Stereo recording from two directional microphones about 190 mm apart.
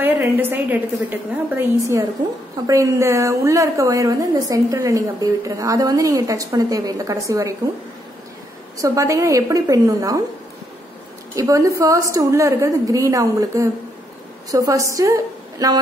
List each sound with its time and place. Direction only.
0.0 s a woman's voice: 10° right (ahead or behind)
8.7 s a woman's voice: 15° right (ahead or behind)
11.3 s a woman's voice: 15° right (ahead or behind)
15.6 s a sound: 20° right (ahead or behind)